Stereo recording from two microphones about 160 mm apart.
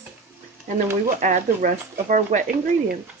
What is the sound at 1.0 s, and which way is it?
Speech, 50° right (ahead or behind).